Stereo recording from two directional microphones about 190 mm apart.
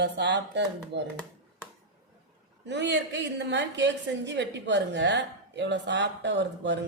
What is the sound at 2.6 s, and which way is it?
A woman's voice, 65° right (ahead or behind).